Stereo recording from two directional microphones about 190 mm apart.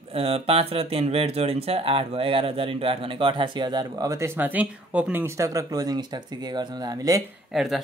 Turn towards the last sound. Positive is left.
turn(degrees=0)  # may be behind; listen again after turning